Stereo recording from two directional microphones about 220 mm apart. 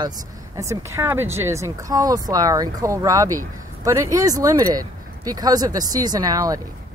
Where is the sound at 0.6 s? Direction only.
15° right (ahead or behind).